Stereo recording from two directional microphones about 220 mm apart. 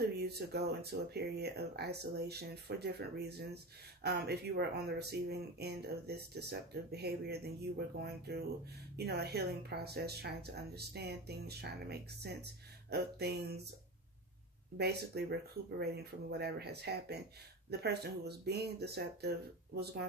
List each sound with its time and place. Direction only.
0.2 s speech: 45° right (ahead or behind)
14.8 s speech: 45° right (ahead or behind)